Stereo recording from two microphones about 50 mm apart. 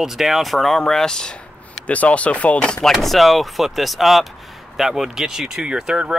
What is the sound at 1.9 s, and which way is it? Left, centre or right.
Speech, left.